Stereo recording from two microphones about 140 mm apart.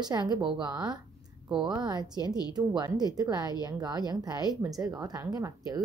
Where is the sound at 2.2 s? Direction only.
30° left (ahead or behind).